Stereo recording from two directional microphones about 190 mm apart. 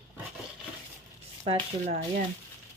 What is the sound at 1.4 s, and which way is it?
Speech, 30° right (ahead or behind).